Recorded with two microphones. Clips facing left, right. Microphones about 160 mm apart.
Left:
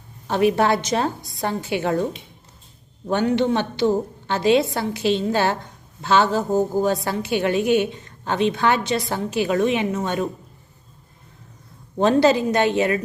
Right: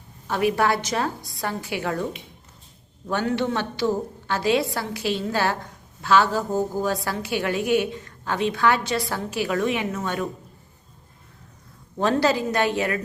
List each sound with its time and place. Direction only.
0.3 s a woman's voice: 25° left (ahead or behind)
3.1 s a woman's voice: 20° left (ahead or behind)
11.9 s a woman's voice: 20° left (ahead or behind)